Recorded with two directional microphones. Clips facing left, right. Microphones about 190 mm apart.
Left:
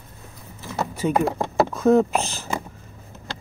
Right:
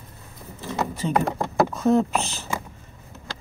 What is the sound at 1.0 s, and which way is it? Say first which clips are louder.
Speech: left 4 dB; 10° left (ahead or behind).